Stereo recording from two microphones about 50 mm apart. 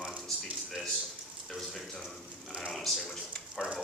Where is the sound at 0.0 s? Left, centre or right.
Right.